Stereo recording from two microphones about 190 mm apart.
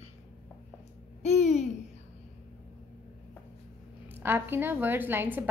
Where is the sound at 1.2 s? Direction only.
35° left (ahead or behind).